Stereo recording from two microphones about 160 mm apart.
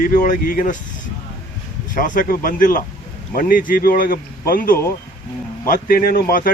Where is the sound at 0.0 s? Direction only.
60° left (ahead or behind).